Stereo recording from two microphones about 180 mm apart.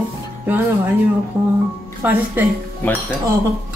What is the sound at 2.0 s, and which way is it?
Speech, 10° right (ahead or behind).